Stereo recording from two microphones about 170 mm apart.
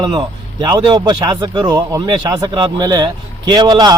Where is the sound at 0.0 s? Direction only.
25° right (ahead or behind).